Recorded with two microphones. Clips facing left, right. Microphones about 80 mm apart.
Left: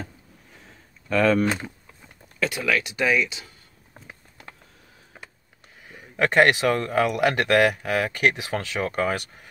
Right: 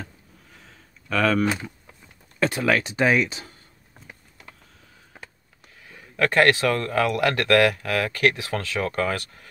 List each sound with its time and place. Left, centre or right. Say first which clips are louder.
1.0 s a sound: left 2 dB; centre
2.4 s speech: right 3 dB; right
5.9 s speech: even; centre